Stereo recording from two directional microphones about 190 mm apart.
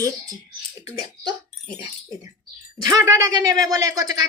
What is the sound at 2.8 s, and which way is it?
A woman's voice, 15° right (ahead or behind).